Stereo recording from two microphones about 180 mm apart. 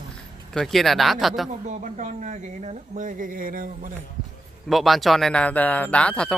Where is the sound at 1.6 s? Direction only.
40° right (ahead or behind).